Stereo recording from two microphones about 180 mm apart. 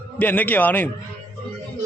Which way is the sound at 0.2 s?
10° left (ahead or behind).